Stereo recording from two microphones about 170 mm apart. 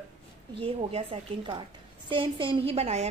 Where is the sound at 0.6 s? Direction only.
35° right (ahead or behind).